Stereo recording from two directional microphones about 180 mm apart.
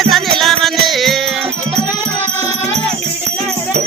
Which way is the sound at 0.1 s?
Centre (ahead or behind).